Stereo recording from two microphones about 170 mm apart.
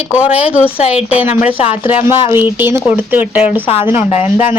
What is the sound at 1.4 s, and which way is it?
Speech, 35° left (ahead or behind).